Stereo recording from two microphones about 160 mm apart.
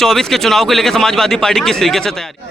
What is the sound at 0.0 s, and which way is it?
Speech, centre (ahead or behind).